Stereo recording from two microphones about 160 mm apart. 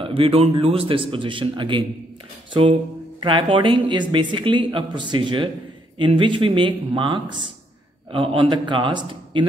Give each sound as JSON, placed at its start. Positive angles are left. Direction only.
{"t": 0.0, "sound": "speech", "side_deg": -35}